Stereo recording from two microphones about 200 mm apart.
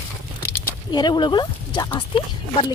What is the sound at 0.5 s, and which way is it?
Speech, 15° left (ahead or behind).